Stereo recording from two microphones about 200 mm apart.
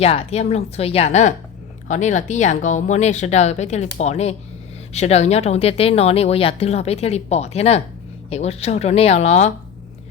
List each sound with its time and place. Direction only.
0.0 s a woman's voice: 30° left (ahead or behind)